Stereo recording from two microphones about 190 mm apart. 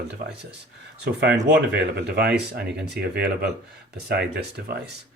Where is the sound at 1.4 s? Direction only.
60° right (ahead or behind).